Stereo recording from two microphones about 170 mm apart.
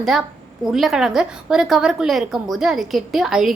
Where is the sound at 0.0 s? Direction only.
Centre (ahead or behind).